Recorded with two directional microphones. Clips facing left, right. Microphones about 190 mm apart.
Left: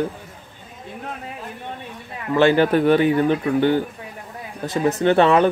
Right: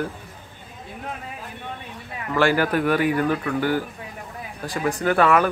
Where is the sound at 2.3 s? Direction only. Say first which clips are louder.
Left 5 dB; 25° left (ahead or behind).